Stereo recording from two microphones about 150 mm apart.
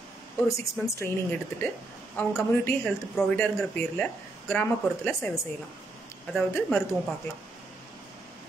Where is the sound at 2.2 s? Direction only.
15° left (ahead or behind).